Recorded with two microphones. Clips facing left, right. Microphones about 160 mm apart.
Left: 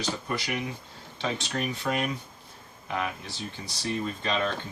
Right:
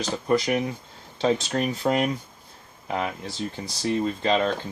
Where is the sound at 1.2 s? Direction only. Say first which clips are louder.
Right 8 dB; 40° right (ahead or behind).